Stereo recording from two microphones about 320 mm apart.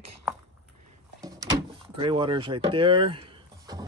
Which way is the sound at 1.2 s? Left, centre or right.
Centre.